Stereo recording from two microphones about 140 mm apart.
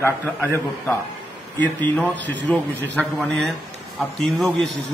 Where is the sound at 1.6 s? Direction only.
10° left (ahead or behind).